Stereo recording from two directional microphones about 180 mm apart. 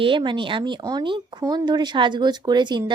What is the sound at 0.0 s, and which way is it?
Speech, 25° right (ahead or behind).